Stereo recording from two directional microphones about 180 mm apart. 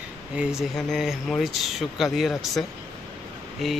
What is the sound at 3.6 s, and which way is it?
Speech, centre (ahead or behind).